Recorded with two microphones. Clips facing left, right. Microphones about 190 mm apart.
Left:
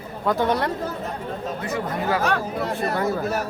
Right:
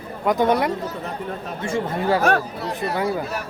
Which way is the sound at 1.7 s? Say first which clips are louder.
Right 4 dB; 25° right (ahead or behind).